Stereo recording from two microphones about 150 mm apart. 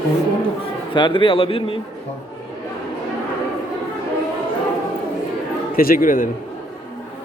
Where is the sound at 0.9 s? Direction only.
30° left (ahead or behind).